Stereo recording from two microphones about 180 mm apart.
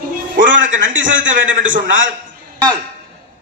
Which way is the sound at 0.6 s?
45° right (ahead or behind).